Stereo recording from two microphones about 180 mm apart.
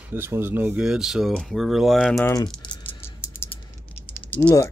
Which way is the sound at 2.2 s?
20° left (ahead or behind).